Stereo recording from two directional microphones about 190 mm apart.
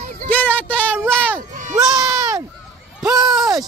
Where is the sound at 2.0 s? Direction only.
15° right (ahead or behind).